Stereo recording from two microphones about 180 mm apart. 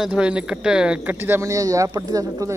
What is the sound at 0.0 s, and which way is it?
Speech, 5° right (ahead or behind).